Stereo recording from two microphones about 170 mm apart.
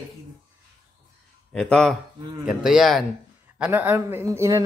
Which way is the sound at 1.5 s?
5° left (ahead or behind).